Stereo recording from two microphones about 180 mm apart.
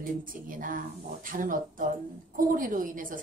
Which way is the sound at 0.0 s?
50° right (ahead or behind).